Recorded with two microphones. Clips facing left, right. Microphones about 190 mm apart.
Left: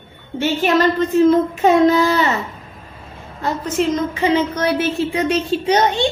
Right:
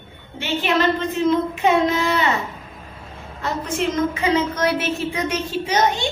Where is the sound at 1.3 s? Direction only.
40° left (ahead or behind).